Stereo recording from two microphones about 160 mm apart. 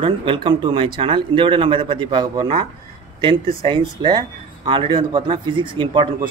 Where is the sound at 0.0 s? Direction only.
35° right (ahead or behind).